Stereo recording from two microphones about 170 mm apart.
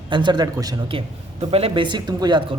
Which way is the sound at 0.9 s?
35° right (ahead or behind).